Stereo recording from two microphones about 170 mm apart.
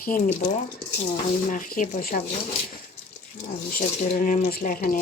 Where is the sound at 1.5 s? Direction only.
50° left (ahead or behind).